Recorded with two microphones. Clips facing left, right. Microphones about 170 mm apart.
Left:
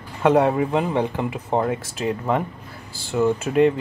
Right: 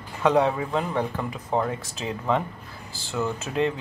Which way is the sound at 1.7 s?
5° left (ahead or behind).